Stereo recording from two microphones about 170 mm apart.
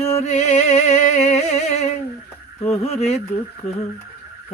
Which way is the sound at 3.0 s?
40° left (ahead or behind).